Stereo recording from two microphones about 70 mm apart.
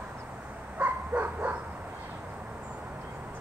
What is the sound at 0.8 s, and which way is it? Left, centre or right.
Bow-wow, right.